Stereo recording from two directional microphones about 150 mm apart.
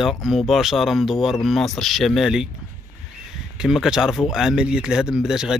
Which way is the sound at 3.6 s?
5° right (ahead or behind).